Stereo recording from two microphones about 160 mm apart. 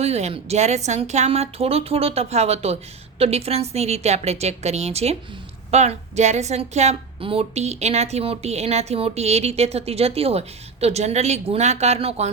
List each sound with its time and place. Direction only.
0.0 s a woman's voice: 40° right (ahead or behind)